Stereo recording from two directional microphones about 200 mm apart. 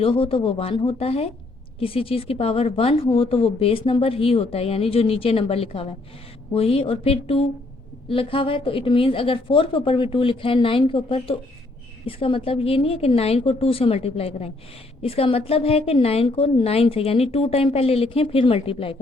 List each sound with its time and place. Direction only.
0.0 s a woman's voice: 30° left (ahead or behind)